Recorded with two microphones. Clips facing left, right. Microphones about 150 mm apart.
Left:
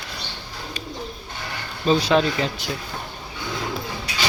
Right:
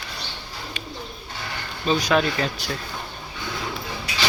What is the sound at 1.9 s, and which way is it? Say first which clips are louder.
Speech: left 2 dB; 30° left (ahead or behind).